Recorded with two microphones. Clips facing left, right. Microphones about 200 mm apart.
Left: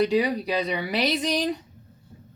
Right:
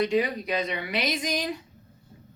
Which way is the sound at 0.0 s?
35° left (ahead or behind).